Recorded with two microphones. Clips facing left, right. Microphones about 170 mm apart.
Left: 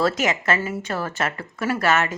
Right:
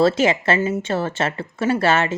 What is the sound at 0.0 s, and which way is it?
A woman's voice, 30° right (ahead or behind).